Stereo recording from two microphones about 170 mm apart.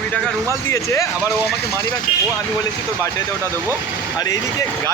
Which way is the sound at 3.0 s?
15° right (ahead or behind).